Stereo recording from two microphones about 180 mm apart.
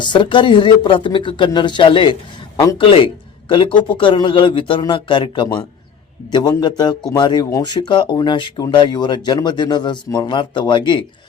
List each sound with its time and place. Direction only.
0.0 s speech: 25° left (ahead or behind)